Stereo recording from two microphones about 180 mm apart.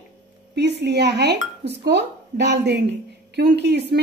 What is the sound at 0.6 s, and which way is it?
A woman's voice, 70° right (ahead or behind).